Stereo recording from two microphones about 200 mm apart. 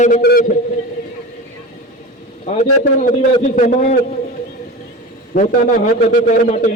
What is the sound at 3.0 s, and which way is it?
Speech, 40° left (ahead or behind).